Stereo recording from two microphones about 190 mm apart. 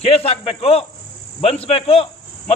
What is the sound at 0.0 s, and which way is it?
A man's voice, 30° left (ahead or behind).